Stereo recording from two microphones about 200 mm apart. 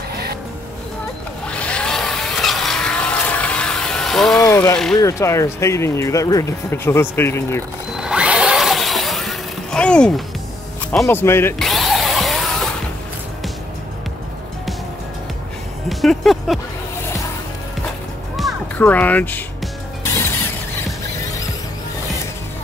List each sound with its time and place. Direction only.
1.5 s vehicle: 5° left (ahead or behind)
4.5 s mechanisms: 15° left (ahead or behind)
5.0 s speech: 15° left (ahead or behind)
7.9 s a sound: 5° right (ahead or behind)
10.9 s speech: 10° left (ahead or behind)
11.5 s tools: centre (ahead or behind)
15.9 s music: centre (ahead or behind)
18.3 s music: 5° left (ahead or behind)